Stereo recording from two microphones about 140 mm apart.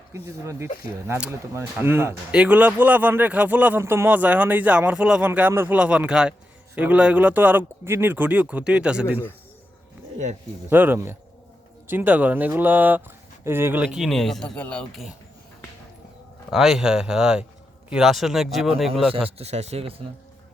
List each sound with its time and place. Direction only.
0.1 s speech: 20° right (ahead or behind)
10.7 s speech: 15° right (ahead or behind); by 15.0 s 10° left (ahead or behind)
16.5 s speech: centre (ahead or behind)
19.4 s speech: 50° right (ahead or behind)